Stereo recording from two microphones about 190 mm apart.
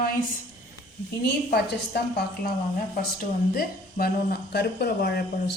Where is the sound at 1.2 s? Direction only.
55° left (ahead or behind).